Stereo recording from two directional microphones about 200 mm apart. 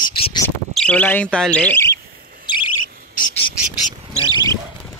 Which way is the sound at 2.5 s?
25° left (ahead or behind).